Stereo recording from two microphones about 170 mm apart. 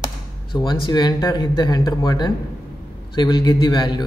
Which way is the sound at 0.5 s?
25° left (ahead or behind).